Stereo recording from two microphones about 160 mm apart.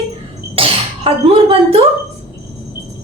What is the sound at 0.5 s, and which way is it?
Sneeze, 35° right (ahead or behind).